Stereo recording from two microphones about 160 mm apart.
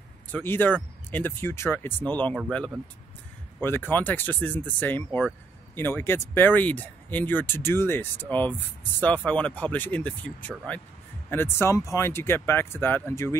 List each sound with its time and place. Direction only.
0.3 s speech: 10° left (ahead or behind)
3.6 s speech: 10° left (ahead or behind)